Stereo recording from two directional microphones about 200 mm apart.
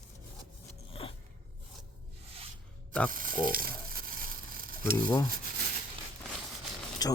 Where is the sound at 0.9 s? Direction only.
30° left (ahead or behind).